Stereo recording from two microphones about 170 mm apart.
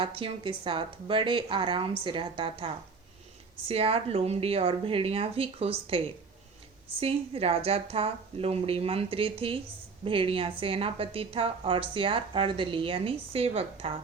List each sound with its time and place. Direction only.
0.0 s a woman's voice: 30° right (ahead or behind)